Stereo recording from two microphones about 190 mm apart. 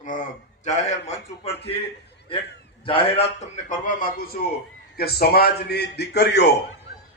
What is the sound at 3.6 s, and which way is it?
A man's voice, 45° left (ahead or behind).